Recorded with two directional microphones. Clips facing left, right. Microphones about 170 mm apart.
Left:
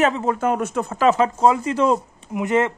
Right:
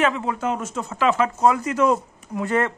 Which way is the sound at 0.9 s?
40° left (ahead or behind).